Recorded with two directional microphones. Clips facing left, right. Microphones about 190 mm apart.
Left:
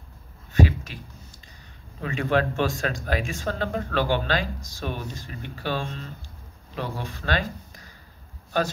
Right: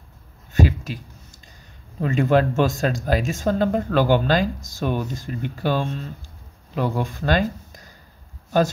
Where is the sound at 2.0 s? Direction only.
40° right (ahead or behind).